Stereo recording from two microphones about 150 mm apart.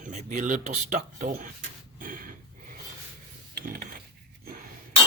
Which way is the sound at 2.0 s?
65° right (ahead or behind).